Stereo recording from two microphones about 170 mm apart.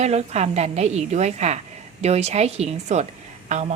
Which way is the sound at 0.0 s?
40° right (ahead or behind).